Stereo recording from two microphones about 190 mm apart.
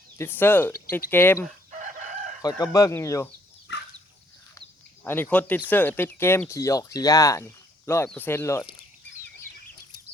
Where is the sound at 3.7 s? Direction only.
70° left (ahead or behind).